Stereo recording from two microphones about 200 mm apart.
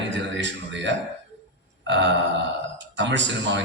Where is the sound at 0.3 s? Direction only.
65° right (ahead or behind).